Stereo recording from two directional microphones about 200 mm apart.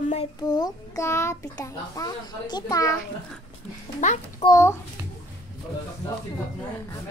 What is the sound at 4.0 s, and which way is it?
Speech, 35° left (ahead or behind).